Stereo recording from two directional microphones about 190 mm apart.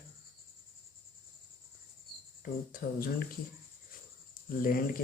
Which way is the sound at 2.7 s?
50° left (ahead or behind).